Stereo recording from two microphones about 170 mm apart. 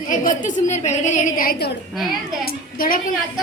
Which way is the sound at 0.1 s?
50° left (ahead or behind).